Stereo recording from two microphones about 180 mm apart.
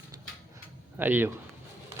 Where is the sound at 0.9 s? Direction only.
10° right (ahead or behind).